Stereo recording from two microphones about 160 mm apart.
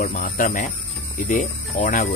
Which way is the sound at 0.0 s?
55° left (ahead or behind).